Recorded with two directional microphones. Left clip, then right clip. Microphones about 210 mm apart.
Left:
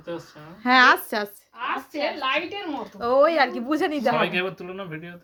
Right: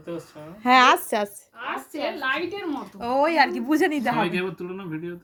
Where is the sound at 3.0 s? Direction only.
Centre (ahead or behind).